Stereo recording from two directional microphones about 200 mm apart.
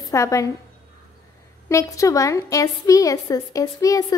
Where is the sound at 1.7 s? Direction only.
15° left (ahead or behind).